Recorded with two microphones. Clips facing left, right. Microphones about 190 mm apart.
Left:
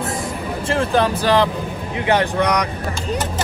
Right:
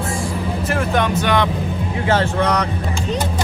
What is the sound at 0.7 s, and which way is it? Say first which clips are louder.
Speech: left 2 dB; 30° left (ahead or behind).